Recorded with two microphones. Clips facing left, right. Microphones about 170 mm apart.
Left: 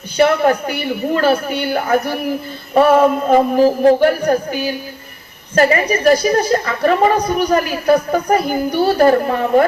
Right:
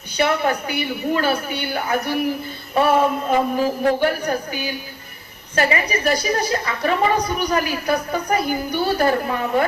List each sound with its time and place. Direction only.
0.2 s a woman's voice: 45° left (ahead or behind)